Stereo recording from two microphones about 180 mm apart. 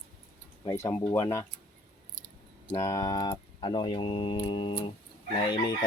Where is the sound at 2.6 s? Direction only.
15° left (ahead or behind).